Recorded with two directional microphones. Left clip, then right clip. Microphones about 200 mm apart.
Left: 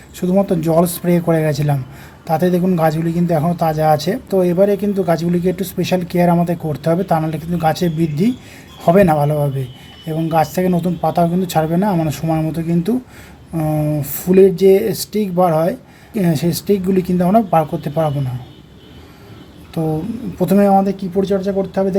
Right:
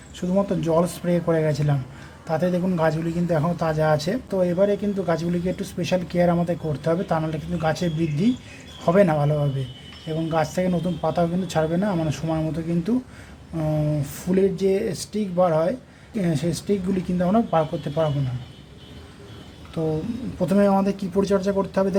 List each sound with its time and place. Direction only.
0.2 s a man's voice: 20° left (ahead or behind)
19.8 s speech: 20° left (ahead or behind); by 21.9 s centre (ahead or behind)